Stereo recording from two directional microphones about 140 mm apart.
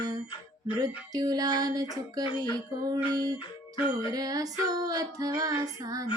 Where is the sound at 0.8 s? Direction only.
25° right (ahead or behind).